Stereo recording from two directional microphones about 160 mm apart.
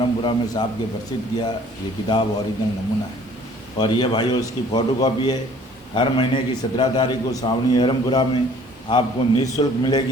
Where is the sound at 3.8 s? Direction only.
25° left (ahead or behind).